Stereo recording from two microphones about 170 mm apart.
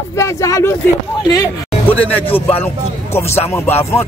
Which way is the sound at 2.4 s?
10° left (ahead or behind).